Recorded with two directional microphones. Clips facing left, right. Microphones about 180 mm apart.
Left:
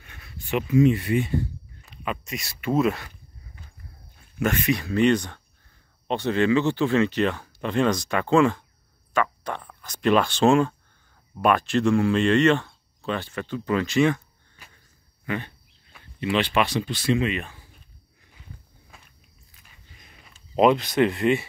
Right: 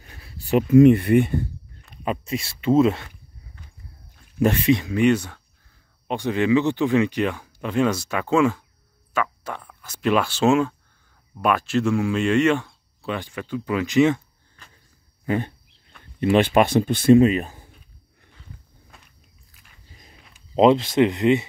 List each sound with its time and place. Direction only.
0.0 s a sound: 35° right (ahead or behind)
0.7 s speech: 55° right (ahead or behind)
2.0 s speech: 30° right (ahead or behind)
3.6 s horse: 10° left (ahead or behind)
4.4 s speech: 30° right (ahead or behind)
4.8 s speech: 10° right (ahead or behind)
14.6 s a sound: 10° left (ahead or behind)
15.2 s speech: 40° right (ahead or behind)
18.9 s walk: centre (ahead or behind)
19.9 s walk: 35° right (ahead or behind)
20.3 s speech: 25° right (ahead or behind)